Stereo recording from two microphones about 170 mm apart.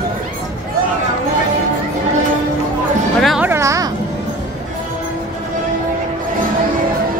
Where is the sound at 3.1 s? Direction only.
Centre (ahead or behind).